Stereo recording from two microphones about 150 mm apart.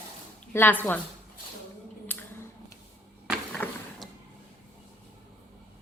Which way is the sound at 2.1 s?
10° left (ahead or behind).